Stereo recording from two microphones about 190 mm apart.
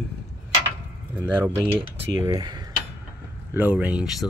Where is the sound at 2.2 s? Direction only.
20° right (ahead or behind).